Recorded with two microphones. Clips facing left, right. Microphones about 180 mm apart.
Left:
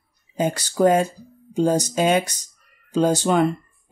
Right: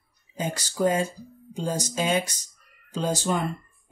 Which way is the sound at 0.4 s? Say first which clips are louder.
Left 7 dB; 70° left (ahead or behind).